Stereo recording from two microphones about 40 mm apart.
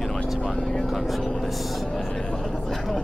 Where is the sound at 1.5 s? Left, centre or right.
Centre.